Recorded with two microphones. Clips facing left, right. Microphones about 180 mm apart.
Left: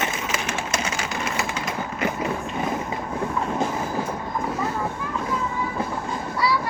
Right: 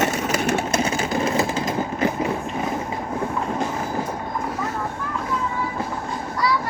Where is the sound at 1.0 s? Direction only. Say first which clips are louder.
Right 6 dB; 30° right (ahead or behind).